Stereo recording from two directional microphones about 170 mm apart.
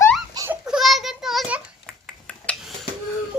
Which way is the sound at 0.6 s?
Centre (ahead or behind).